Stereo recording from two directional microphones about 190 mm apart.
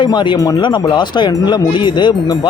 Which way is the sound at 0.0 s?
25° left (ahead or behind).